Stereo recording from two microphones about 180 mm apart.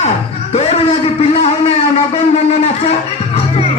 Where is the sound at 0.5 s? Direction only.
35° left (ahead or behind).